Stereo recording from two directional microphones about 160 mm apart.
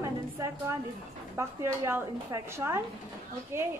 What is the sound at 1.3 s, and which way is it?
A woman's voice, 15° right (ahead or behind).